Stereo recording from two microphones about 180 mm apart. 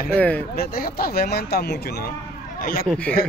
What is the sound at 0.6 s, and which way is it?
A man's voice, 55° left (ahead or behind).